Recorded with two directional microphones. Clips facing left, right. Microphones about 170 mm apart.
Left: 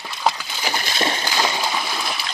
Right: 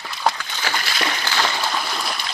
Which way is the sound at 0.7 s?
25° left (ahead or behind).